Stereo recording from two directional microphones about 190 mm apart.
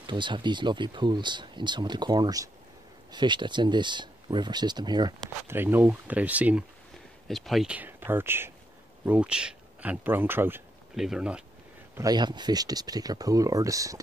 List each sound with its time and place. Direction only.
0.0 s speech: 25° right (ahead or behind); by 11.4 s 5° right (ahead or behind)
11.9 s speech: 20° right (ahead or behind)